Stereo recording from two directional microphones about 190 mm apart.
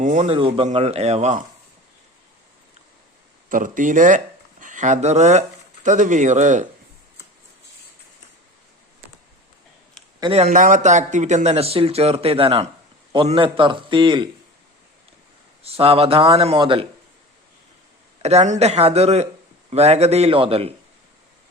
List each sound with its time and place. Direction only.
0.0 s speech: 40° right (ahead or behind)
0.3 s speech: 30° right (ahead or behind)
3.5 s speech: 45° right (ahead or behind)
10.3 s a man's voice: 40° right (ahead or behind)
15.6 s speech: 30° right (ahead or behind)
18.2 s speech: 35° right (ahead or behind)